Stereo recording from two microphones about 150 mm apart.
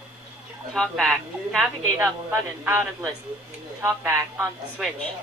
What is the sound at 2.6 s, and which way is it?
Speech, 15° right (ahead or behind).